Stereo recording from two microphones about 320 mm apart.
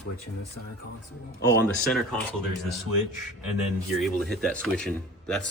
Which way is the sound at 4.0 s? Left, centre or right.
Centre.